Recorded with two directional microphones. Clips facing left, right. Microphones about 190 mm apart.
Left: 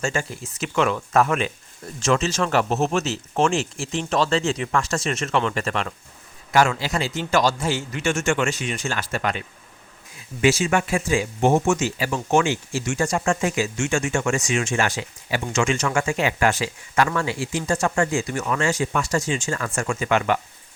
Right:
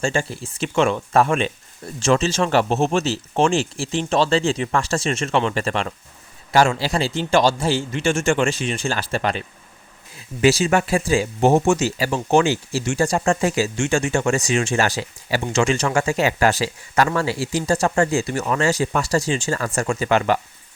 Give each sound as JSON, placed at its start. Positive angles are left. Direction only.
{"t": 0.0, "sound": "speech", "side_deg": -30}
{"t": 10.4, "sound": "speech", "side_deg": -35}